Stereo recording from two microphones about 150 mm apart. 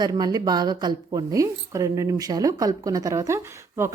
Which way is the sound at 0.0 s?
30° right (ahead or behind).